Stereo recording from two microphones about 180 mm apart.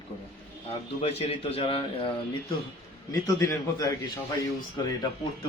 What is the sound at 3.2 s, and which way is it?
Speech, 20° left (ahead or behind).